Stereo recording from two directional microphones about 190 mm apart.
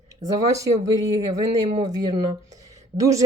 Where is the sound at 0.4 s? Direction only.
15° right (ahead or behind).